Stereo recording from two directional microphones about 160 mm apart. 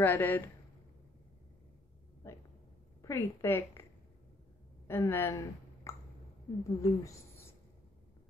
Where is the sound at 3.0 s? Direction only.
15° left (ahead or behind).